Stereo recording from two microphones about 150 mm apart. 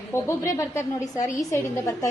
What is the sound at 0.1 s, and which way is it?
A woman's voice, 20° left (ahead or behind).